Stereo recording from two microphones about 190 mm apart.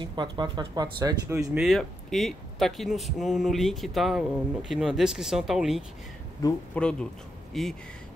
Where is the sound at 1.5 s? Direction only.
Centre (ahead or behind).